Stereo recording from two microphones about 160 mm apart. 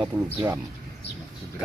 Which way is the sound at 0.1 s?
20° right (ahead or behind).